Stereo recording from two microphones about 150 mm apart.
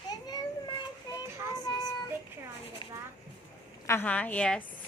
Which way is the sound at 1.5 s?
25° left (ahead or behind).